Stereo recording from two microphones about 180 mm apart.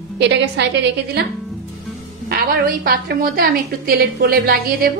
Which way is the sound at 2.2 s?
55° right (ahead or behind).